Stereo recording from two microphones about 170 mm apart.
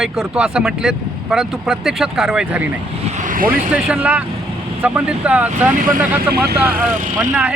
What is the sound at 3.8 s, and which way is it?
Speech, 10° right (ahead or behind).